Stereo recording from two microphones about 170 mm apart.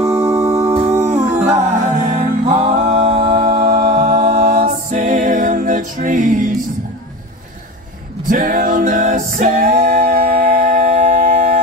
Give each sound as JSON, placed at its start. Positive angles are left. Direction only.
{"t": 0.1, "sound": "music", "side_deg": -15}
{"t": 1.3, "sound": "music", "side_deg": -45}
{"t": 3.6, "sound": "a capella", "side_deg": -55}
{"t": 8.3, "sound": "music", "side_deg": -55}
{"t": 11.0, "sound": "a sound", "side_deg": -45}